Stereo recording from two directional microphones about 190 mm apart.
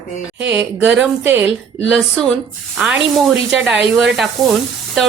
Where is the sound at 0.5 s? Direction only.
10° right (ahead or behind).